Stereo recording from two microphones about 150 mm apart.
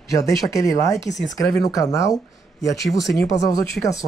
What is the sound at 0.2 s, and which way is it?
Speech, 20° left (ahead or behind).